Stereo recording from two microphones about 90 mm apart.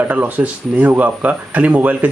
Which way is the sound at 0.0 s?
20° right (ahead or behind).